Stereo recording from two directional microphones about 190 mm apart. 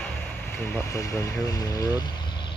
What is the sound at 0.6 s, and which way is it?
Speech, 15° left (ahead or behind).